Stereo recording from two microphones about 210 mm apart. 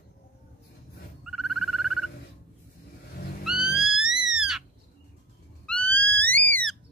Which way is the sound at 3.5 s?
90° left.